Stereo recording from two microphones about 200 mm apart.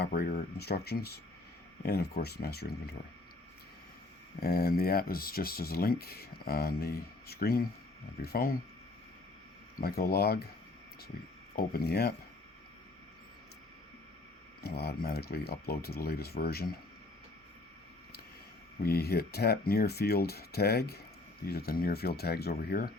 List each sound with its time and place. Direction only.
0.0 s speech: 50° left (ahead or behind)
4.4 s speech: 50° left (ahead or behind)
9.8 s speech: 50° left (ahead or behind)
11.5 s speech: 50° left (ahead or behind)
14.6 s speech: 50° left (ahead or behind)
18.8 s speech: 50° left (ahead or behind)